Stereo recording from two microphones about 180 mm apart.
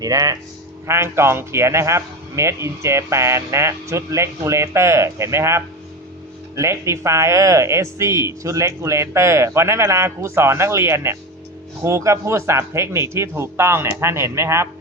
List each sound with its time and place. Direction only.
0.0 s speech: 20° right (ahead or behind)